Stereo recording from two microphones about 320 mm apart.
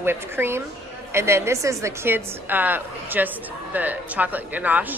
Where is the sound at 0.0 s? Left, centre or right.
Centre.